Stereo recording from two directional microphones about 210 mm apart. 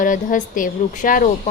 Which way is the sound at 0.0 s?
40° left (ahead or behind).